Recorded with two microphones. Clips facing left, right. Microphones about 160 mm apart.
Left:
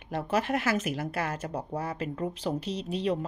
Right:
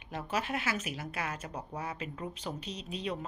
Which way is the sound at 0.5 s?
45° left (ahead or behind).